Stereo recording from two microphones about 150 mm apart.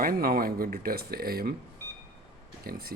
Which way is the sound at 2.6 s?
90° right.